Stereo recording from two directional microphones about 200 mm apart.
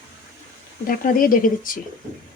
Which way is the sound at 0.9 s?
45° left (ahead or behind).